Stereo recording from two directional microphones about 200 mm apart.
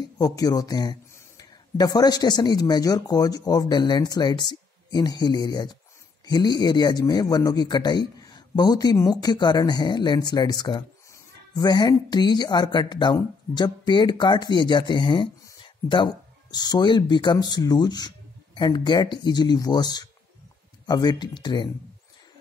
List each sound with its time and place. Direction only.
0.2 s speech: 20° left (ahead or behind)